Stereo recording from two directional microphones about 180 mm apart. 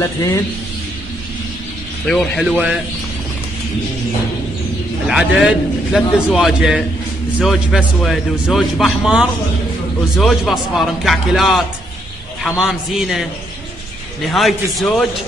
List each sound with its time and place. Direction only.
0.0 s a man's voice: 15° left (ahead or behind)
2.0 s a man's voice: 5° left (ahead or behind)
5.0 s a man's voice: 5° right (ahead or behind)
14.3 s a man's voice: centre (ahead or behind)